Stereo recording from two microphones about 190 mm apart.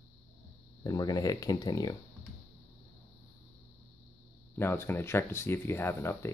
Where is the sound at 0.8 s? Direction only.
20° left (ahead or behind).